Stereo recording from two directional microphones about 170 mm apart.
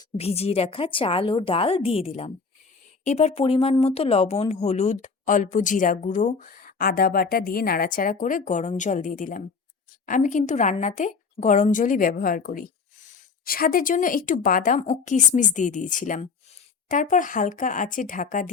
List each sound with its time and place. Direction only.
0.2 s a woman's voice: 35° left (ahead or behind)